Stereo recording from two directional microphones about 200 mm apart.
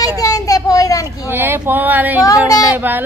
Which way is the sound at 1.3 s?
10° right (ahead or behind).